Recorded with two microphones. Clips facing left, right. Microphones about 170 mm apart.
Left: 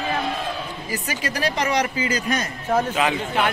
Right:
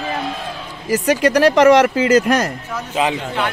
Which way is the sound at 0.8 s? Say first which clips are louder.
Right 15 dB; 85° right.